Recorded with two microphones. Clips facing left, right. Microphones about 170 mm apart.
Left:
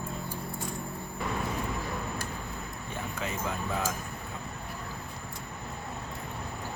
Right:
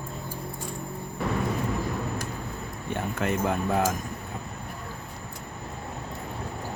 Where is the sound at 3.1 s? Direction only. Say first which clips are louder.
Right 8 dB; 60° right (ahead or behind).